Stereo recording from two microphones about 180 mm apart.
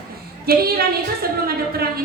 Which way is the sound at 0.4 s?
60° right (ahead or behind).